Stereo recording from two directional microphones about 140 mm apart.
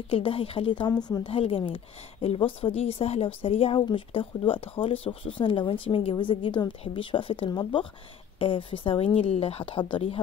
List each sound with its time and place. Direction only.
0.1 s speech: 40° left (ahead or behind)
1.3 s speech: 40° left (ahead or behind)